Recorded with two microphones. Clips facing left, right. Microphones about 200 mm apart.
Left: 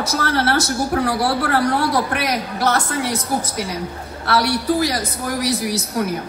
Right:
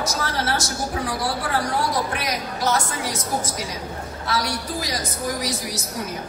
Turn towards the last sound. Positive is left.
turn(degrees=65)  # may be behind; listen again after turning